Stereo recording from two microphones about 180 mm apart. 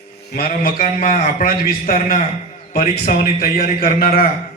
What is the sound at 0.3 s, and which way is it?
A man's voice, 55° left (ahead or behind).